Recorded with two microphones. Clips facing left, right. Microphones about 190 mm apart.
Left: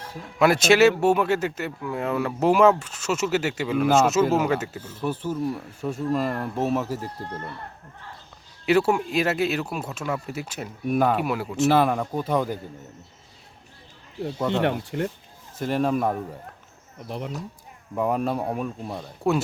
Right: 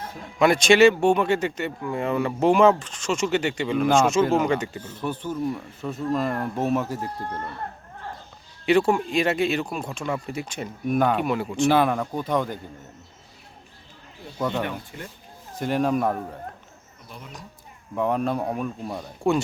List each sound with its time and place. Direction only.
0.3 s speech: 5° left (ahead or behind)
8.6 s speech: 5° left (ahead or behind)
14.6 s speech: 65° left (ahead or behind)
15.5 s speech: centre (ahead or behind)
17.1 s speech: 70° left (ahead or behind)
17.9 s speech: 5° left (ahead or behind)